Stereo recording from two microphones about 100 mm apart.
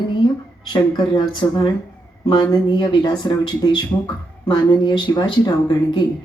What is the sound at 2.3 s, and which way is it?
Speech, 50° left (ahead or behind).